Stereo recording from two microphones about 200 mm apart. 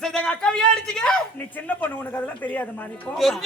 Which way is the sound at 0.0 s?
5° left (ahead or behind).